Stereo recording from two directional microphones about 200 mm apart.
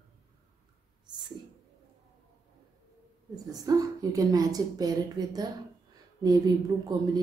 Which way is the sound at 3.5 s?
20° right (ahead or behind).